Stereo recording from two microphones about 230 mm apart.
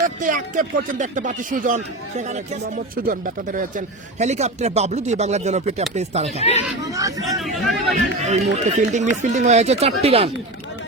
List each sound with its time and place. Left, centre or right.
0.2 s speech: right
6.8 s speech: centre
7.3 s speech: centre
7.9 s speech: right